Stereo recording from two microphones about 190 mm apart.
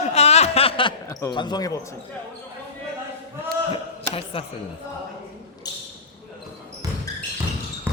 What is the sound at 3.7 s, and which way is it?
Speech, 30° left (ahead or behind).